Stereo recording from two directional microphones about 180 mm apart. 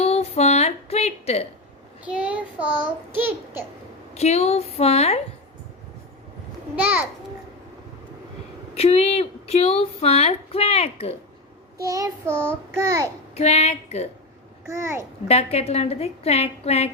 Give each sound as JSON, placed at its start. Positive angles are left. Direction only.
{"t": 0.0, "sound": "a sound", "side_deg": 35}
{"t": 2.0, "sound": "child singing", "side_deg": -5}
{"t": 4.1, "sound": "speech", "side_deg": 35}
{"t": 8.7, "sound": "speech", "side_deg": 35}
{"t": 11.8, "sound": "child singing", "side_deg": -20}
{"t": 13.3, "sound": "speech", "side_deg": 35}
{"t": 14.7, "sound": "child singing", "side_deg": -15}
{"t": 15.3, "sound": "speech", "side_deg": 35}